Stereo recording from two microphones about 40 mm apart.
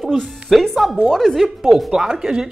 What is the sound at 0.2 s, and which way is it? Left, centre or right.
Speech, centre.